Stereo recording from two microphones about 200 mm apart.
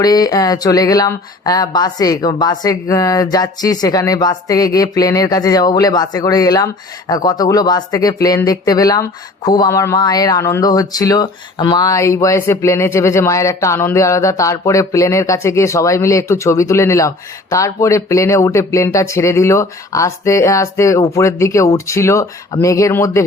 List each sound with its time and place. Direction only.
0.0 s speech: 20° left (ahead or behind)